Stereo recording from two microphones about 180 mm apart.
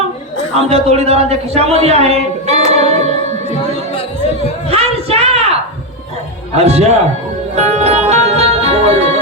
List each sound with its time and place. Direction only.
0.5 s speech: 35° right (ahead or behind)
4.7 s a sound: 35° right (ahead or behind)
6.6 s speech: 35° right (ahead or behind)
7.5 s music: 40° right (ahead or behind)